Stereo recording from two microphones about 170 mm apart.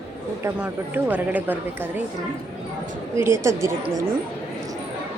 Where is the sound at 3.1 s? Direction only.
15° right (ahead or behind).